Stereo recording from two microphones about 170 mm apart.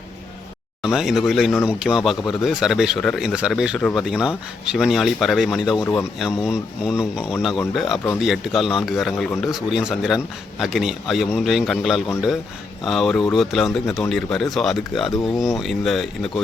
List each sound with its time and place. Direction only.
0.8 s speech: 5° right (ahead or behind)
5.8 s speech: 15° left (ahead or behind)
6.1 s speech: 5° right (ahead or behind)